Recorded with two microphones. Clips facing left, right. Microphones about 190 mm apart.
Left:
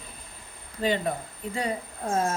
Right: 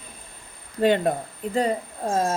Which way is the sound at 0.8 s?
55° right (ahead or behind).